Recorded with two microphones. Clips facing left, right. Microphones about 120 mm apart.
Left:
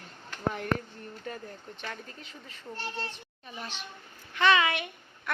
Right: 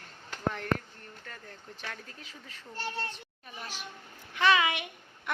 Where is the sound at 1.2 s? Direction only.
20° left (ahead or behind).